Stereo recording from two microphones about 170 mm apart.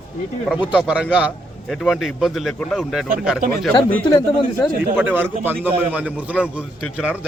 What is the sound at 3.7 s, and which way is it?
Speech, 25° left (ahead or behind).